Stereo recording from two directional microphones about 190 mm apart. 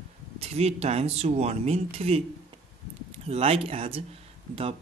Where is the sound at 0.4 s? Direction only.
35° right (ahead or behind).